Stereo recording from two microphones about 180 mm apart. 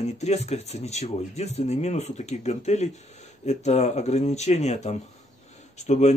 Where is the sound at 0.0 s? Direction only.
40° left (ahead or behind).